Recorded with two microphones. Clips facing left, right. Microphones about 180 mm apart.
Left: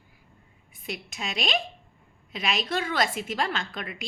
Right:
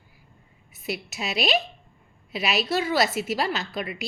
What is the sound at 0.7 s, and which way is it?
A woman's voice, 5° right (ahead or behind).